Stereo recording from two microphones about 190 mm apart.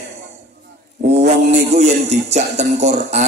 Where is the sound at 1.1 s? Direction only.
35° right (ahead or behind).